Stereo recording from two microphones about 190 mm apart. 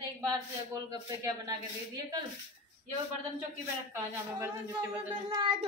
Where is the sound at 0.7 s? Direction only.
20° right (ahead or behind).